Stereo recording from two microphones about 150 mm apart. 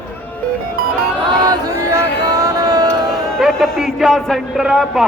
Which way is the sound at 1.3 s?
25° right (ahead or behind).